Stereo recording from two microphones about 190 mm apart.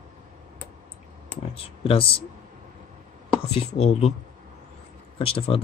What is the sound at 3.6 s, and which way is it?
Speech, 35° left (ahead or behind).